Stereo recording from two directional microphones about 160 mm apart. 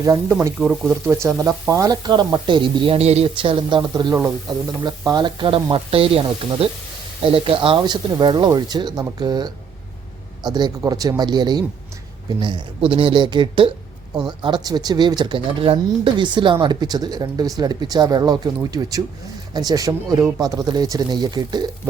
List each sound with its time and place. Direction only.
0.0 s speech: 20° right (ahead or behind)
0.6 s speech: centre (ahead or behind)
1.0 s speech: 15° right (ahead or behind)